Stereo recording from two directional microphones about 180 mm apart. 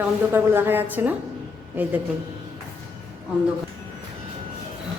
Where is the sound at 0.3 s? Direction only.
10° right (ahead or behind).